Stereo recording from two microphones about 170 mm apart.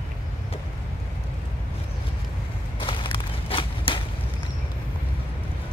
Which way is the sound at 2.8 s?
30° left (ahead or behind).